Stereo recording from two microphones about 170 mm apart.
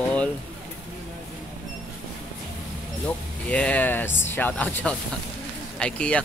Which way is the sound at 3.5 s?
5° left (ahead or behind).